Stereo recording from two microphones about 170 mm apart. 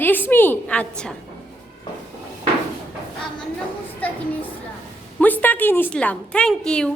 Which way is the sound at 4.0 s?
10° left (ahead or behind).